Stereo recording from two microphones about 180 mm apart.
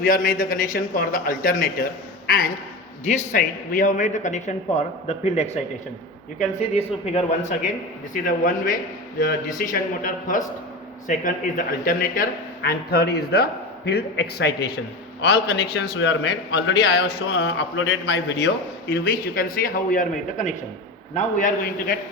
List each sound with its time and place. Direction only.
0.0 s a man's voice: 50° left (ahead or behind)
3.1 s a man's voice: 45° left (ahead or behind)
6.6 s a man's voice: 35° left (ahead or behind)
8.1 s a man's voice: 50° left (ahead or behind)
12.6 s a man's voice: 60° left (ahead or behind)
18.9 s a man's voice: 60° left (ahead or behind)